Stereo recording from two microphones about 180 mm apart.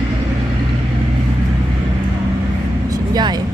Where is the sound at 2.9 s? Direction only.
20° right (ahead or behind).